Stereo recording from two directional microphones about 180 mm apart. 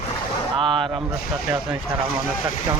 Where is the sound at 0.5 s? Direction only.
30° right (ahead or behind).